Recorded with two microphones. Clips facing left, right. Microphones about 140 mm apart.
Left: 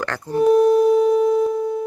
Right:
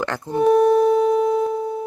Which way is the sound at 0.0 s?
20° right (ahead or behind).